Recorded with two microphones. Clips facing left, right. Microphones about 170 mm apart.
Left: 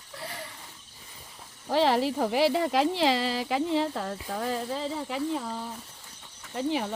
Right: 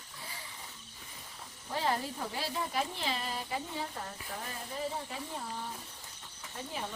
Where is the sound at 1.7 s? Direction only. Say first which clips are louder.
Left 10 dB; 90° left.